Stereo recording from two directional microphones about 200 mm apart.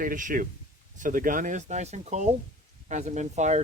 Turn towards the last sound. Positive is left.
turn(degrees=-35)  # may be behind; listen again after turning